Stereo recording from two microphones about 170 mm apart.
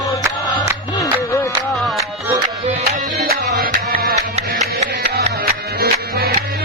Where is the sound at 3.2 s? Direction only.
60° right (ahead or behind).